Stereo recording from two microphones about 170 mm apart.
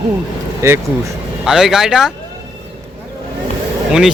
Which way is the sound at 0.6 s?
15° right (ahead or behind).